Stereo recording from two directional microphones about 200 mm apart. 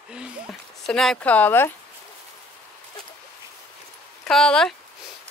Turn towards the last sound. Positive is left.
turn(degrees=5)  # may be behind; listen again after turning